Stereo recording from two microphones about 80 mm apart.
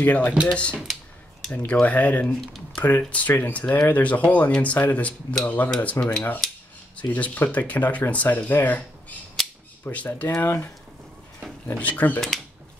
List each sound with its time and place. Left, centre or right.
0.0 s speech: left
9.8 s speech: left